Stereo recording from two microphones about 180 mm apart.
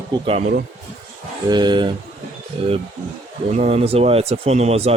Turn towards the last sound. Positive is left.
turn(degrees=-35)  # may be behind; listen again after turning